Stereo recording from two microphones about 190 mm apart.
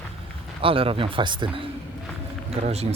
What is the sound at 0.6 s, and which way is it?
Speech, 30° right (ahead or behind).